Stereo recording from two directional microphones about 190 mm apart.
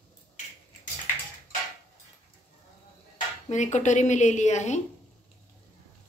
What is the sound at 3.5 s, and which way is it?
Speech, 40° left (ahead or behind).